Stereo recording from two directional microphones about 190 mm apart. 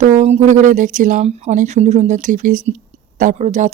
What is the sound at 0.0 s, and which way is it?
Speech, 35° right (ahead or behind).